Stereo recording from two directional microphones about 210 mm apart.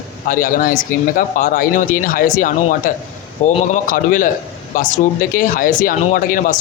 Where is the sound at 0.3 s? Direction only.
40° left (ahead or behind).